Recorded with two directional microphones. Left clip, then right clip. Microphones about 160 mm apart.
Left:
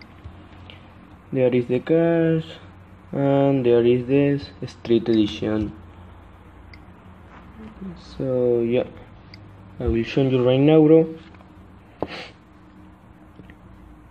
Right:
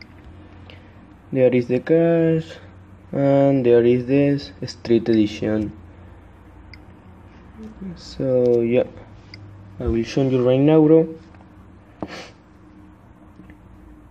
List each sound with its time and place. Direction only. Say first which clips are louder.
1.3 s speech: right 3 dB; 15° right (ahead or behind)
7.9 s speech: right 4 dB; 20° right (ahead or behind)
9.8 s a man's voice: even; 5° right (ahead or behind)